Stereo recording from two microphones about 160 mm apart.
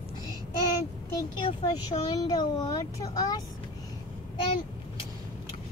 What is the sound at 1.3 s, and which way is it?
Speech, 25° left (ahead or behind).